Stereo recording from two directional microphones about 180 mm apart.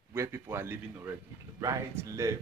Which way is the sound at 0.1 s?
15° right (ahead or behind).